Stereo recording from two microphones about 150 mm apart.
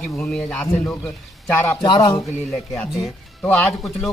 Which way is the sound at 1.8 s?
25° left (ahead or behind).